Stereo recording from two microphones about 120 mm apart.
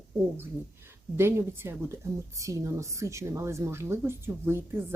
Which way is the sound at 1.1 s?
20° right (ahead or behind).